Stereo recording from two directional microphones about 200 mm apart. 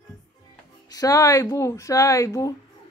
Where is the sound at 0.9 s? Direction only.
15° left (ahead or behind).